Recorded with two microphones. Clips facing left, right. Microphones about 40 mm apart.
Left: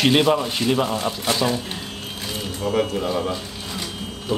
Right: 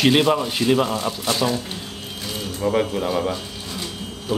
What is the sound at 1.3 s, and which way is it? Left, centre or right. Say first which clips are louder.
Speech: right 1 dB; centre.